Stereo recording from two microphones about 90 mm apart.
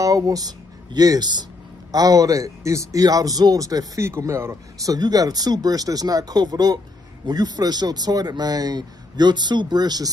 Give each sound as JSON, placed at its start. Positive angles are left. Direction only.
{"t": 0.0, "sound": "speech", "side_deg": -40}
{"t": 4.9, "sound": "speech", "side_deg": -45}